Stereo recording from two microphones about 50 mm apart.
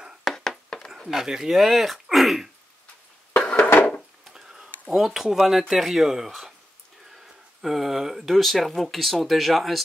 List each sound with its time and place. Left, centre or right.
0.2 s a sound: centre
0.9 s speech: centre
3.3 s a sound: left
3.7 s wood: left
4.3 s speech: centre
7.6 s speech: centre